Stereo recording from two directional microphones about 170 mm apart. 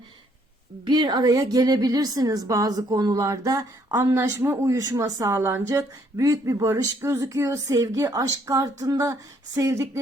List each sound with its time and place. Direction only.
0.9 s a woman's voice: 25° right (ahead or behind)